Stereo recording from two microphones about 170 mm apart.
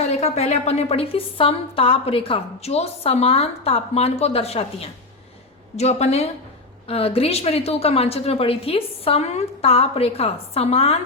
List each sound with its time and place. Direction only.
0.1 s a woman's voice: 40° left (ahead or behind)